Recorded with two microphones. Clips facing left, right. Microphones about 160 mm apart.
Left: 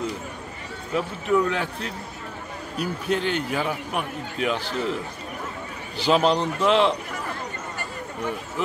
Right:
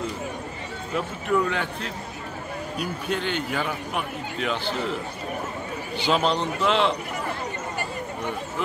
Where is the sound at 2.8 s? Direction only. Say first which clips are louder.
Left 4 dB; 35° left (ahead or behind).